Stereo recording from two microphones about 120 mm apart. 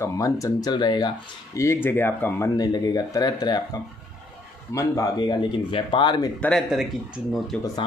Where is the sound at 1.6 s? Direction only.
20° left (ahead or behind).